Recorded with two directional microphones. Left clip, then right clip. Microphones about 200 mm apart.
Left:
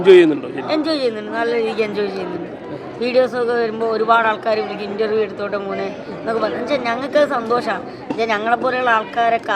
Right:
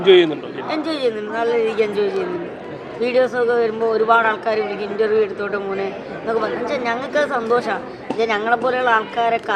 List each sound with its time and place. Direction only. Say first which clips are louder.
0.0 s a man's voice: left 3 dB; 25° left (ahead or behind)